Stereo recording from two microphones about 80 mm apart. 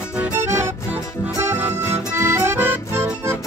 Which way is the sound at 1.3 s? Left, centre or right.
Right.